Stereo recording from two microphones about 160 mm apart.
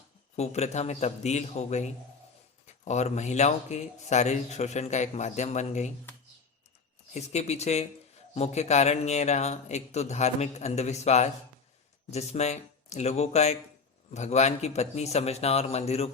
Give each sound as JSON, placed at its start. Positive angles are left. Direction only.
{"t": 0.3, "sound": "speech", "side_deg": 45}
{"t": 7.1, "sound": "speech", "side_deg": 45}